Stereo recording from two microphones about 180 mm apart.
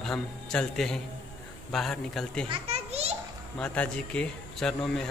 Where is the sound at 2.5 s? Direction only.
35° right (ahead or behind).